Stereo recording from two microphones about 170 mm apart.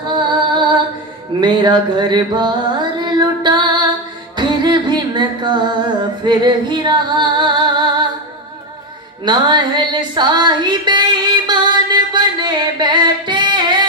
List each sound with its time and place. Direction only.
0.1 s music: 25° right (ahead or behind)
9.2 s female singing: 25° right (ahead or behind)